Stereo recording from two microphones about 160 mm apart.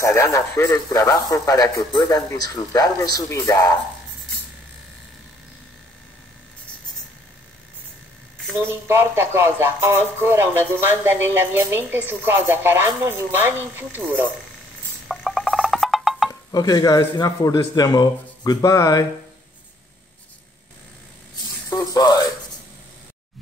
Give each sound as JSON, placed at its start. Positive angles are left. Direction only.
{"t": 0.0, "sound": "speech", "side_deg": 15}
{"t": 8.6, "sound": "speech", "side_deg": -15}
{"t": 15.0, "sound": "a sound", "side_deg": 0}
{"t": 16.3, "sound": "speech", "side_deg": 25}
{"t": 21.6, "sound": "speech", "side_deg": 25}